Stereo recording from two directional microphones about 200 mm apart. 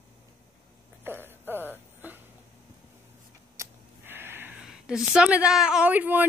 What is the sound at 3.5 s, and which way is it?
Speech, 10° right (ahead or behind).